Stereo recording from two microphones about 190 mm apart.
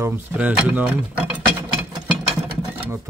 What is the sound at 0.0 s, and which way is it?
Speech, 10° right (ahead or behind).